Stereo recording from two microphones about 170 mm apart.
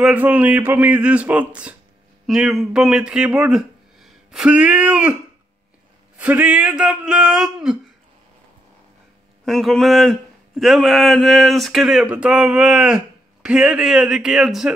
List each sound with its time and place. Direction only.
0.0 s speech: 10° right (ahead or behind)
6.1 s speech: 10° right (ahead or behind)
9.4 s speech: centre (ahead or behind)